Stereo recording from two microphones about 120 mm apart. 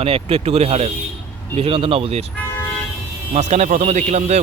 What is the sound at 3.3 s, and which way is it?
A man's voice, 75° right (ahead or behind).